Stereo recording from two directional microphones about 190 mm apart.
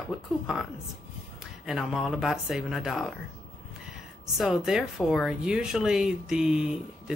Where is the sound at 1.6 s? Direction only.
Centre (ahead or behind).